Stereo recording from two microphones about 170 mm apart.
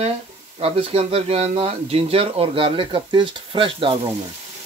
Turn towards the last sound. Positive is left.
turn(degrees=-30)  # may be behind; listen again after turning